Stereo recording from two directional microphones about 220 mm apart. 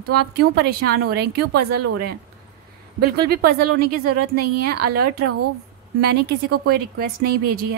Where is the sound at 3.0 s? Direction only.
45° right (ahead or behind).